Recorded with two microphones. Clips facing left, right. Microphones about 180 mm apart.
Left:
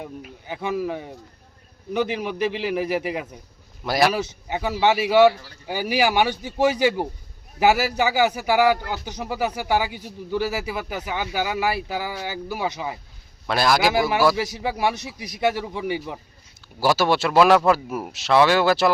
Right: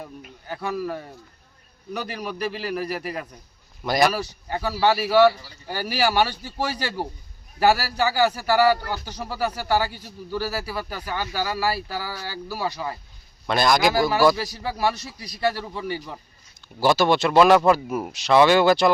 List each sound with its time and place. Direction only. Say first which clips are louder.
0.0 s speech: left 3 dB; 5° left (ahead or behind)
3.8 s speech: even; 5° left (ahead or behind)
4.1 s speech: left 2 dB; 20° left (ahead or behind)
13.5 s speech: even; 5° left (ahead or behind)